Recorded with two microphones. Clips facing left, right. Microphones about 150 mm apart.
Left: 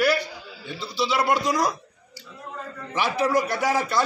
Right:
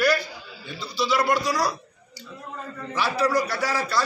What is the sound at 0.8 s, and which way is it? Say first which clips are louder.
Speech: even; 25° left (ahead or behind).